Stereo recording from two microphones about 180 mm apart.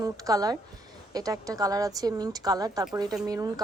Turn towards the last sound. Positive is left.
turn(degrees=-20)  # may be behind; listen again after turning